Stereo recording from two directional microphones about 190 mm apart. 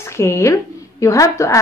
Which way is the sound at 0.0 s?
15° left (ahead or behind).